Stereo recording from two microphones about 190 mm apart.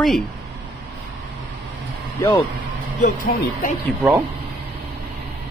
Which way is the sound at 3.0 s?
50° left (ahead or behind).